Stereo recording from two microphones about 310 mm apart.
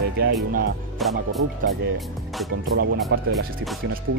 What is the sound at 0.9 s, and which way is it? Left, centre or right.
Speech, centre.